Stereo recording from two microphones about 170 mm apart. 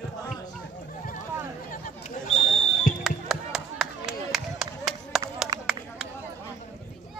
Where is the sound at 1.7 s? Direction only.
50° left (ahead or behind).